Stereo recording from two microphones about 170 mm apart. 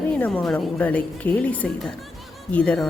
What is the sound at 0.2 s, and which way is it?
A woman's voice, 5° left (ahead or behind).